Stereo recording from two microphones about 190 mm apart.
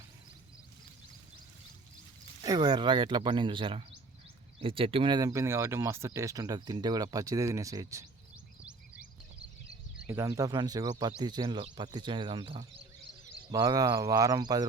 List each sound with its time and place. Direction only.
2.4 s speech: 25° right (ahead or behind)
10.1 s speech: 15° right (ahead or behind)